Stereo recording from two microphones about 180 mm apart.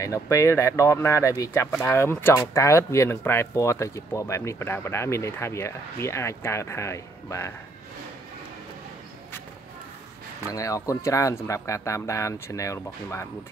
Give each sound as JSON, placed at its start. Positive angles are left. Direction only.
{"t": 0.0, "sound": "speech", "side_deg": 15}
{"t": 10.5, "sound": "speech", "side_deg": 20}